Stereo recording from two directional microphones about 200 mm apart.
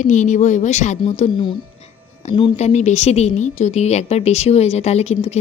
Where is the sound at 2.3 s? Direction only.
35° left (ahead or behind).